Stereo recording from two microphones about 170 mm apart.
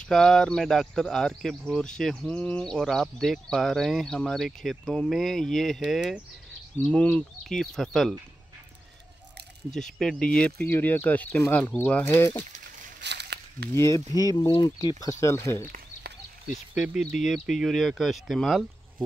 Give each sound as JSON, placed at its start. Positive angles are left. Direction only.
{"t": 0.0, "sound": "speech", "side_deg": 0}
{"t": 6.8, "sound": "speech", "side_deg": 5}
{"t": 9.8, "sound": "speech", "side_deg": 5}
{"t": 13.0, "sound": "a sound", "side_deg": -85}
{"t": 13.7, "sound": "speech", "side_deg": 20}
{"t": 16.7, "sound": "speech", "side_deg": -5}